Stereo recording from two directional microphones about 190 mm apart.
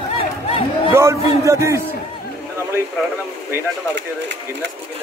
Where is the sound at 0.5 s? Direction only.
30° left (ahead or behind).